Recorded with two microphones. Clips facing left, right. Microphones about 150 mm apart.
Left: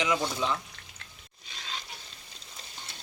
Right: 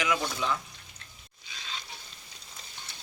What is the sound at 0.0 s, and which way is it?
Speech, 20° left (ahead or behind).